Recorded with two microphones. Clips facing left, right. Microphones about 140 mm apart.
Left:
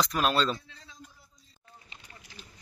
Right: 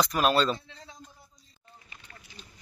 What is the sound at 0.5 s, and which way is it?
Speech, 20° right (ahead or behind).